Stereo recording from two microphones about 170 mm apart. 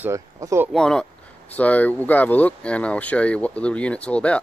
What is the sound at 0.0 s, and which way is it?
Speech, 20° right (ahead or behind).